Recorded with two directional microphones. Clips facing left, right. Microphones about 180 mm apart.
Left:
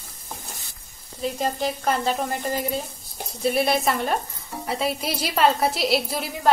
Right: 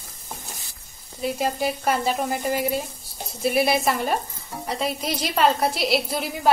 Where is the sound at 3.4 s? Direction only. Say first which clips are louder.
Right 1 dB; 5° right (ahead or behind).